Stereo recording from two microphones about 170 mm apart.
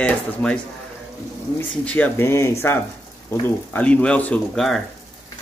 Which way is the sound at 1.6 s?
10° left (ahead or behind).